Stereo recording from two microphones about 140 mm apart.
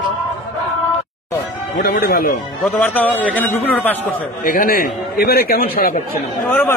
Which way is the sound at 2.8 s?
10° left (ahead or behind).